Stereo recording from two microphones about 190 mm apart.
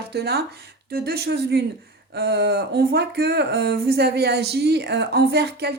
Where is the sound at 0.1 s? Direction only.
60° right (ahead or behind).